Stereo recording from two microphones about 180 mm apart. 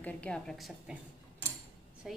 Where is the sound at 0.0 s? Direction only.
10° left (ahead or behind).